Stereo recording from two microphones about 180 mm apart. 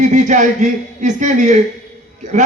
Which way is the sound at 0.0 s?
40° right (ahead or behind).